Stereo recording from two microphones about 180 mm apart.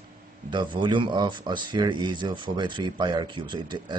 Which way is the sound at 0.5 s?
25° right (ahead or behind).